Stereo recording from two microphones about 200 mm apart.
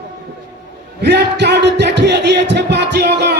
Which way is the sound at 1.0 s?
55° right (ahead or behind).